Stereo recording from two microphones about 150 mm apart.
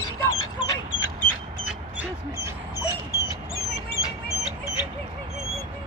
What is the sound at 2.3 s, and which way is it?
Dog, 20° right (ahead or behind).